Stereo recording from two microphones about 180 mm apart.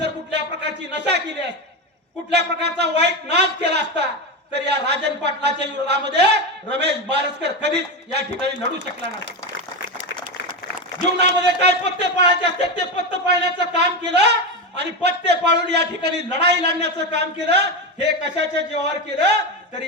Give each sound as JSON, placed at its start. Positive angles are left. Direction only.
{"t": 2.3, "sound": "a man's voice", "side_deg": -70}
{"t": 11.2, "sound": "a man's voice", "side_deg": -65}